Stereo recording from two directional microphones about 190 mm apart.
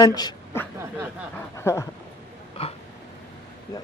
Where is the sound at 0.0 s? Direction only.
20° left (ahead or behind).